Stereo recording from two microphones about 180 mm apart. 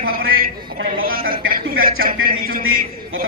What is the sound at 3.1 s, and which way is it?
Speech, 90° right.